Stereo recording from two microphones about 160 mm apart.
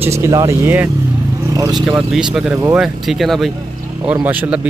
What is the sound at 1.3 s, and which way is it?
Vehicle, 20° right (ahead or behind).